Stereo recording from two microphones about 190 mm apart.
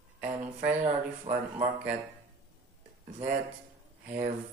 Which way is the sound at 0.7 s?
35° right (ahead or behind).